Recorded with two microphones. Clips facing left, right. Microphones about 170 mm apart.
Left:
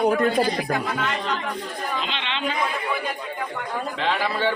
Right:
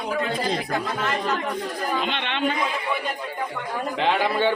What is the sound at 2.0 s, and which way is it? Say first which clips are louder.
Speech: right 3 dB; 55° right (ahead or behind).